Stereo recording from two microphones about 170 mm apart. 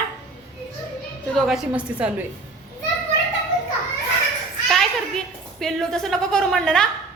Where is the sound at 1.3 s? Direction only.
Centre (ahead or behind).